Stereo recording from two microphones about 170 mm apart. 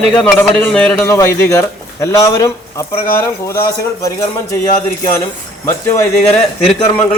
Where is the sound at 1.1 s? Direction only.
15° left (ahead or behind).